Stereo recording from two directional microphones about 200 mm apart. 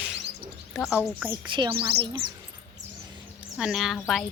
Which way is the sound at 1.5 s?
25° right (ahead or behind).